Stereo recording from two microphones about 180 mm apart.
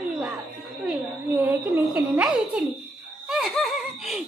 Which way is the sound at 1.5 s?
5° right (ahead or behind).